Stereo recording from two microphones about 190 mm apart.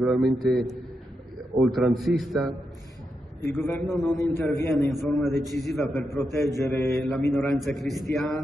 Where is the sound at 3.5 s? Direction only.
15° left (ahead or behind).